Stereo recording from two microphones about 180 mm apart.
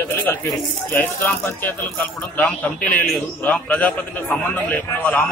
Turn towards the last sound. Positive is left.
turn(degrees=10)  # may be behind; listen again after turning